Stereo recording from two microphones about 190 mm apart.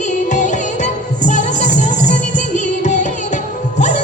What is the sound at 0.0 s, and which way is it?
Music, 40° left (ahead or behind).